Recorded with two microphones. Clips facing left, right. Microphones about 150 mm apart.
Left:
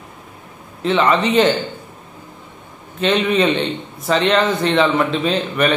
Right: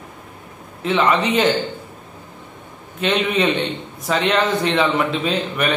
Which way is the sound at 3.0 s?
10° right (ahead or behind).